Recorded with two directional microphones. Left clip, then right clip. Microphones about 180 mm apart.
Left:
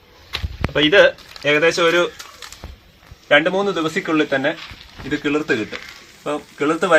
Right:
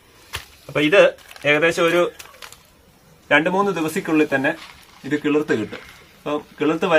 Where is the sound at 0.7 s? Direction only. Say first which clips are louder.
Left 2 dB; 25° right (ahead or behind).